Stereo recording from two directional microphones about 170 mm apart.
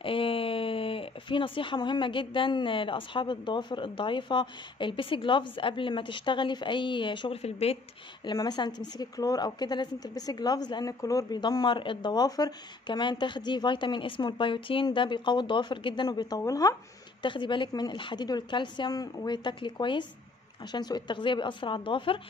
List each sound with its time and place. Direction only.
0.0 s speech: 30° left (ahead or behind)
8.3 s speech: 25° left (ahead or behind)